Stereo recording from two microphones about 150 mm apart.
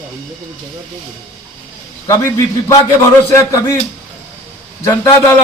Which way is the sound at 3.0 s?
20° left (ahead or behind).